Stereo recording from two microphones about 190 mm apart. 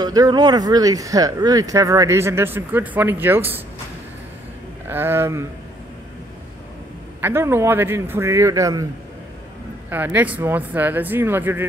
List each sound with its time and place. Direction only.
0.0 s speech: 20° right (ahead or behind)
4.8 s speech: 10° right (ahead or behind)
7.2 s speech: 10° right (ahead or behind)
9.8 s speech: 10° right (ahead or behind)